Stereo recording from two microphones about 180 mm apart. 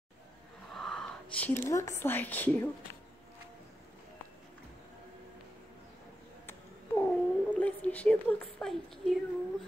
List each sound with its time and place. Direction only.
0.7 s speech: centre (ahead or behind)
7.0 s cat: 10° left (ahead or behind)